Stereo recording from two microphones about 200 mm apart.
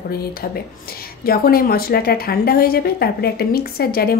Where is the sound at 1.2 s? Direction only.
50° left (ahead or behind).